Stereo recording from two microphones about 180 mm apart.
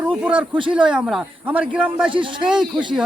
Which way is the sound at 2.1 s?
25° right (ahead or behind).